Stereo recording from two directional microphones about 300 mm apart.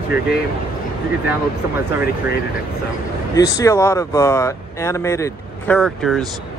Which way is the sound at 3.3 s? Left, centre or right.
Centre.